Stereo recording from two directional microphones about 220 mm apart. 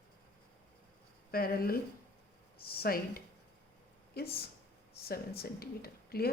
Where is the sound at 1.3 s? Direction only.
45° left (ahead or behind).